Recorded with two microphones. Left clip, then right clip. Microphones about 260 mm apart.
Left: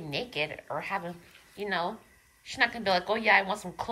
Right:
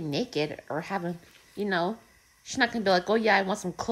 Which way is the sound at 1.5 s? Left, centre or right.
Right.